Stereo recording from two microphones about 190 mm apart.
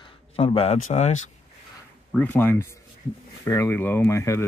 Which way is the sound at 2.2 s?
10° left (ahead or behind).